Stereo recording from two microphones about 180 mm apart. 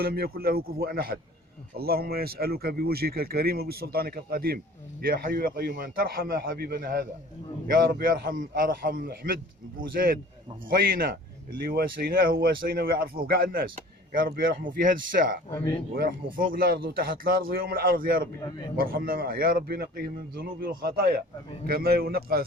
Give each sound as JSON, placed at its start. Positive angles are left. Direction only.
{"t": 0.0, "sound": "a man's voice", "side_deg": -55}